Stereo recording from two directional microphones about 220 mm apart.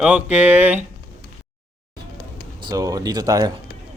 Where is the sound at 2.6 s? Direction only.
15° right (ahead or behind).